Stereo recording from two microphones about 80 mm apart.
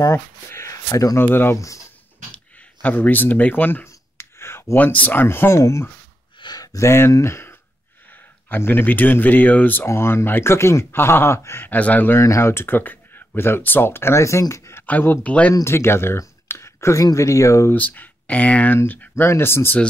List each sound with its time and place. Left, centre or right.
0.1 s speech: left
1.2 s speech: left
6.4 s a sound: left
6.9 s speech: left
9.8 s speech: left
11.7 s speech: left
12.2 s speech: left
14.9 s speech: left
15.6 s speech: left
17.7 s speech: left
19.2 s speech: left